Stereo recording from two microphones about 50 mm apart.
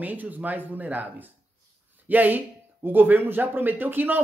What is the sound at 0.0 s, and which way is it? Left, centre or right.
Speech, right.